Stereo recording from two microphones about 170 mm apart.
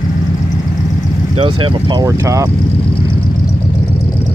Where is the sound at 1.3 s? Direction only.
35° right (ahead or behind).